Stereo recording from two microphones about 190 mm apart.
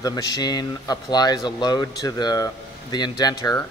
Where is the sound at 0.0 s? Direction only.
20° left (ahead or behind).